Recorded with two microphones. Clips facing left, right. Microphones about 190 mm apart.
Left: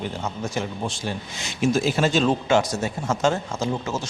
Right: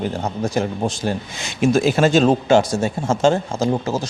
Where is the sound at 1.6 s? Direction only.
60° right (ahead or behind); by 2.6 s 45° right (ahead or behind).